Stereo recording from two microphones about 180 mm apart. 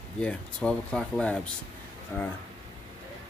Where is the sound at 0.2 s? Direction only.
5° left (ahead or behind).